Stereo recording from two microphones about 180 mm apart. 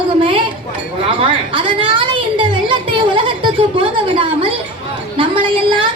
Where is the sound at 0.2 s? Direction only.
30° right (ahead or behind).